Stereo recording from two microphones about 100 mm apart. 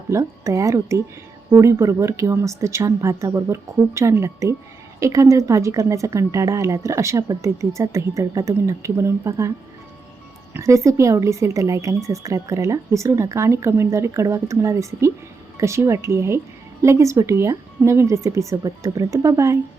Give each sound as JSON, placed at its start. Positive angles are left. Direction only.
{"t": 0.1, "sound": "a woman's voice", "side_deg": -30}
{"t": 10.6, "sound": "a woman's voice", "side_deg": -30}